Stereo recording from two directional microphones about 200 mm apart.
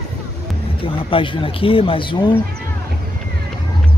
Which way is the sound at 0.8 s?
25° left (ahead or behind).